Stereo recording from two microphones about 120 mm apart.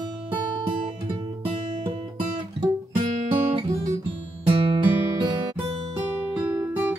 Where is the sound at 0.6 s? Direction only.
40° right (ahead or behind).